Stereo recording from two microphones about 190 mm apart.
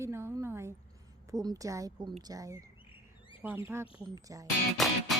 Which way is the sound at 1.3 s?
20° right (ahead or behind).